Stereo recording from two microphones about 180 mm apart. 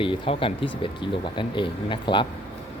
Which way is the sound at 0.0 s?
30° left (ahead or behind).